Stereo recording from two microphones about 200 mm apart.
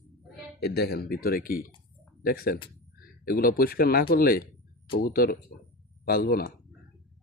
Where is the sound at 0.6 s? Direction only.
55° left (ahead or behind).